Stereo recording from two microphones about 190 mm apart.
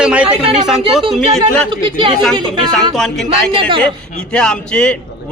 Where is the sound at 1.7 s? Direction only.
25° right (ahead or behind).